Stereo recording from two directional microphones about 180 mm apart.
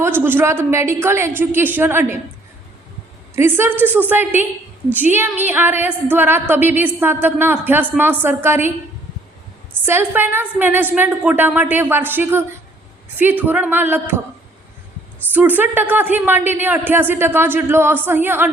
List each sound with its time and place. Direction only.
0.0 s a woman's voice: 10° right (ahead or behind)
3.3 s a woman's voice: 15° right (ahead or behind)
9.8 s a woman's voice: 10° right (ahead or behind)
15.3 s a woman's voice: 10° right (ahead or behind)